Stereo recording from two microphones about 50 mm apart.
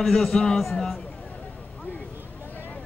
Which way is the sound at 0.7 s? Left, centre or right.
Centre.